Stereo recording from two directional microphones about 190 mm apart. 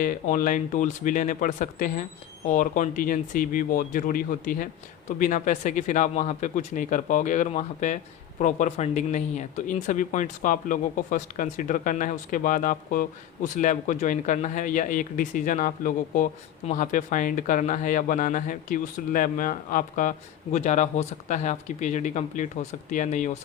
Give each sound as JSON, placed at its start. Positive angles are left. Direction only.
{"t": 0.0, "sound": "speech", "side_deg": 45}